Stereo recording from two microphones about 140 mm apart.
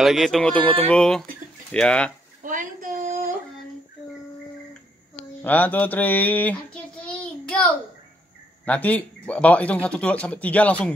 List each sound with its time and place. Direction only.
0.0 s a man's voice: centre (ahead or behind)
2.4 s a sound: 70° right (ahead or behind)
5.4 s child singing: 10° left (ahead or behind)
8.6 s a man's voice: 10° left (ahead or behind)